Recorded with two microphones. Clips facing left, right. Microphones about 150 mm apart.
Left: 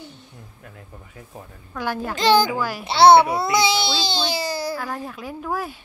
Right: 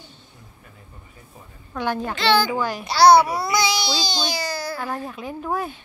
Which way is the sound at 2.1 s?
40° left (ahead or behind).